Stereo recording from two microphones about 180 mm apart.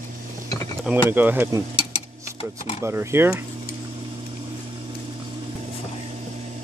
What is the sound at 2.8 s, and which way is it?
Speech, 15° right (ahead or behind).